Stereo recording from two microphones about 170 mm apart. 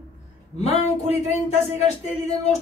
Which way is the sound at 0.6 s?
40° left (ahead or behind).